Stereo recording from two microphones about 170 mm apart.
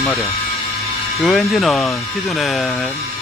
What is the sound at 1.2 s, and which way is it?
Speech, centre (ahead or behind).